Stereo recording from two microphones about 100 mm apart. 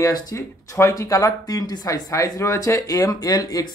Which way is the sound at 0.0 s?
35° left (ahead or behind).